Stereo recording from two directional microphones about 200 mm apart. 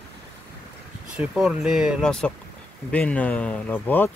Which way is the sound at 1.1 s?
5° right (ahead or behind).